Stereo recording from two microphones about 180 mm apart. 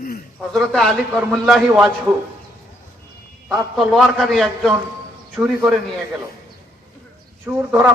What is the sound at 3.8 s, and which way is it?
A man's voice, centre (ahead or behind).